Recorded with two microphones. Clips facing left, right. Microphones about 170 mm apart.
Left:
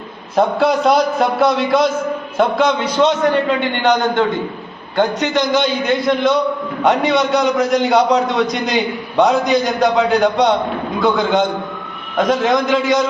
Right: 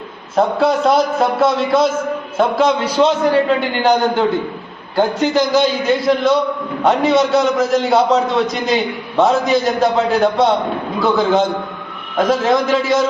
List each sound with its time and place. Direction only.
0.3 s a man's voice: centre (ahead or behind)